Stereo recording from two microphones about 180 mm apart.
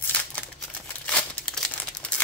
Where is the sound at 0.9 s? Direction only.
5° left (ahead or behind).